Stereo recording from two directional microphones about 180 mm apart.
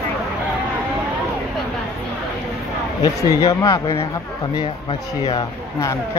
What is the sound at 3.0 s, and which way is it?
Speech, 20° left (ahead or behind).